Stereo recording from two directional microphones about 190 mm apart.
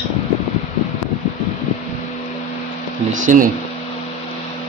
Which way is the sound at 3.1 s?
45° right (ahead or behind).